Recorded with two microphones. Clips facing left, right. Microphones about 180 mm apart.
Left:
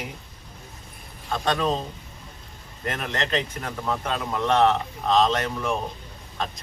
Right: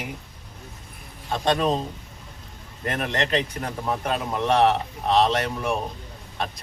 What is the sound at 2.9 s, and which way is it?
Speech, 15° right (ahead or behind).